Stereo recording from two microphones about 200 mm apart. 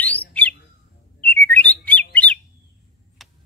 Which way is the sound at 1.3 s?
10° left (ahead or behind).